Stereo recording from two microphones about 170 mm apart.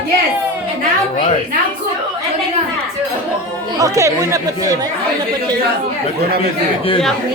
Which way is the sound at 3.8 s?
20° right (ahead or behind).